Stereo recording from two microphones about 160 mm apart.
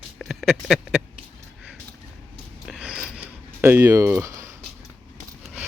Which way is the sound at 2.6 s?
5° right (ahead or behind).